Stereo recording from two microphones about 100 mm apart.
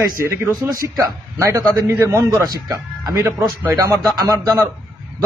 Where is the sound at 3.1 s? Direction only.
25° right (ahead or behind).